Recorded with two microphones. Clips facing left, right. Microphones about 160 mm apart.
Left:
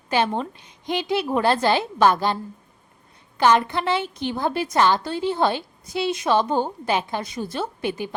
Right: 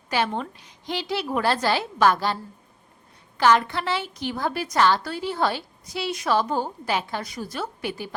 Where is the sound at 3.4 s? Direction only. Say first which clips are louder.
Left 1 dB; 20° left (ahead or behind).